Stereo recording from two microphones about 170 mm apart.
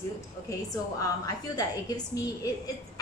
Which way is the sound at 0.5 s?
20° left (ahead or behind).